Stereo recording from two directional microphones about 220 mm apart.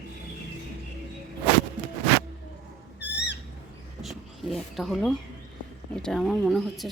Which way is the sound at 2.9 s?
50° left (ahead or behind).